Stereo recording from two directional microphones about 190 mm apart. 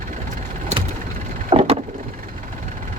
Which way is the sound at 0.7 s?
35° right (ahead or behind).